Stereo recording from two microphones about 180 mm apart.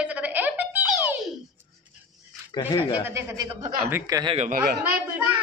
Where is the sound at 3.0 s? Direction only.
20° right (ahead or behind).